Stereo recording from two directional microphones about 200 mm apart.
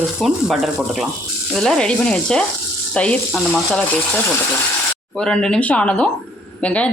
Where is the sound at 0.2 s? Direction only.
Centre (ahead or behind).